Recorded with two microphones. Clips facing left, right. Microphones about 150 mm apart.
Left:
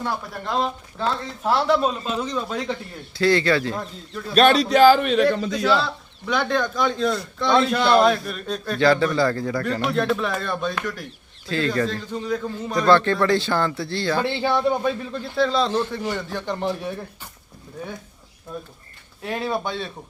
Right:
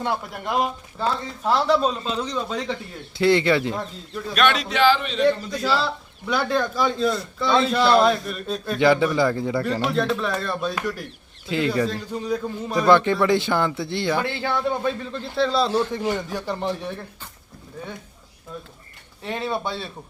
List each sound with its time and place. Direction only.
0.0 s a man's voice: 10° right (ahead or behind)
1.5 s a man's voice: 5° left (ahead or behind)
3.2 s speech: 20° right (ahead or behind)
4.4 s speech: 35° left (ahead or behind); by 5.2 s 55° left (ahead or behind)
5.2 s a man's voice: 80° left
6.2 s a man's voice: 5° right (ahead or behind)
8.8 s a man's voice: 15° right (ahead or behind)
9.8 s a man's voice: centre (ahead or behind); by 14.3 s 20° right (ahead or behind)
14.3 s speech: 20° left (ahead or behind)
15.1 s a man's voice: centre (ahead or behind)
16.0 s speech: 20° right (ahead or behind)
16.5 s a man's voice: centre (ahead or behind)
19.2 s a man's voice: centre (ahead or behind)